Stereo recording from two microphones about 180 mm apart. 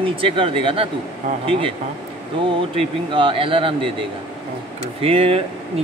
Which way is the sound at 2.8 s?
30° right (ahead or behind).